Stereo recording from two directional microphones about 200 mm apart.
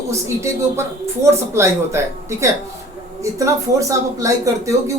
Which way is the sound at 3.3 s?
15° right (ahead or behind).